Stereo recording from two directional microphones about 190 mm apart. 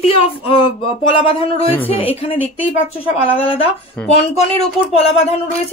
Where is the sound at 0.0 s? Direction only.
30° left (ahead or behind).